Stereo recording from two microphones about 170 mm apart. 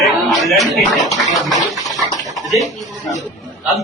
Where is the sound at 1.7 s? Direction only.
20° right (ahead or behind).